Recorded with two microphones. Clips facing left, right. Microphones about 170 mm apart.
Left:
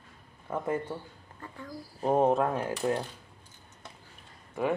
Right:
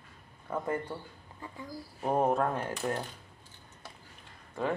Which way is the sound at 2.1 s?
20° left (ahead or behind).